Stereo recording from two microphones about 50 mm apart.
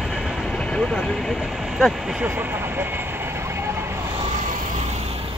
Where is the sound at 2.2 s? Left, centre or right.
Right.